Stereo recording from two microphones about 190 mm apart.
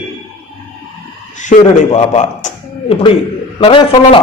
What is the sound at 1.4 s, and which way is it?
A man's voice, 40° left (ahead or behind).